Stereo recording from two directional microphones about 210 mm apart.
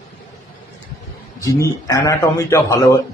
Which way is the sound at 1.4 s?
15° left (ahead or behind).